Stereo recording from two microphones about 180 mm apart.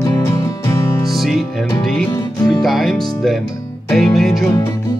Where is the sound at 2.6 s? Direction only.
Centre (ahead or behind).